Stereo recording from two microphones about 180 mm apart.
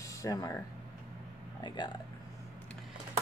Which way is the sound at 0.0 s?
20° left (ahead or behind).